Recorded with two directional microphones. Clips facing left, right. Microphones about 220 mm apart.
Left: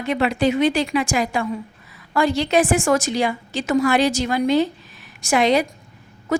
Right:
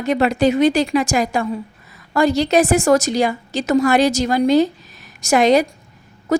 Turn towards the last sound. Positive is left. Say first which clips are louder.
# right 4 dB
turn(degrees=-40)  # may be behind; listen again after turning